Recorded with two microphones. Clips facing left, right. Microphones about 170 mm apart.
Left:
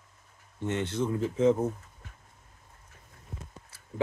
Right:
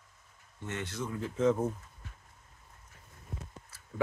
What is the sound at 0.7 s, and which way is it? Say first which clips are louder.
Speech: left 8 dB; 25° left (ahead or behind).